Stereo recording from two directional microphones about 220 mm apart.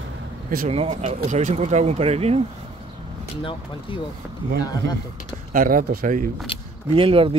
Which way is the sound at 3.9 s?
20° left (ahead or behind).